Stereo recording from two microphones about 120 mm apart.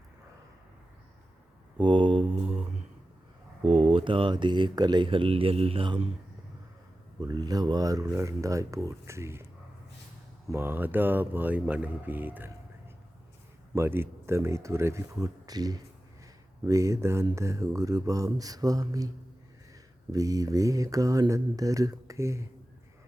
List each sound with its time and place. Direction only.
1.8 s speech: 40° right (ahead or behind)
7.2 s speech: 35° right (ahead or behind)
10.5 s speech: 20° right (ahead or behind)
13.7 s speech: 20° right (ahead or behind)